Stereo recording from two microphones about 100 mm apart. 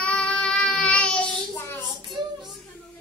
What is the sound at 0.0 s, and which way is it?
Child singing, 10° left (ahead or behind).